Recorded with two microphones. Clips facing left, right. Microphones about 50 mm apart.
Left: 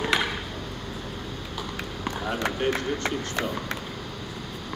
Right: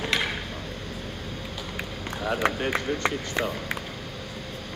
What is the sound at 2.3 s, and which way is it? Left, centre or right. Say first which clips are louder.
Speech: right 2 dB; right.